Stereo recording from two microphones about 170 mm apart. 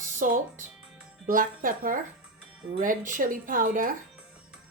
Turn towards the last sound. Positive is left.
turn(degrees=-55)  # may be behind; listen again after turning